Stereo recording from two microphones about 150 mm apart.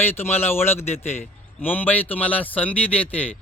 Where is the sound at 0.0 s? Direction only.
15° left (ahead or behind).